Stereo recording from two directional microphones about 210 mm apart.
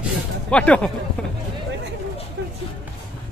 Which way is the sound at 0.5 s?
5° left (ahead or behind).